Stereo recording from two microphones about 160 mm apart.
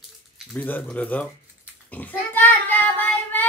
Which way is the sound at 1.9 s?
10° left (ahead or behind).